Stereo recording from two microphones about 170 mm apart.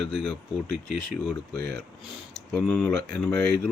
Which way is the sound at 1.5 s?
75° right (ahead or behind).